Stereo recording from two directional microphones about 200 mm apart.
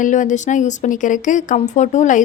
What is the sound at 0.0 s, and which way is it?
Speech, 40° left (ahead or behind).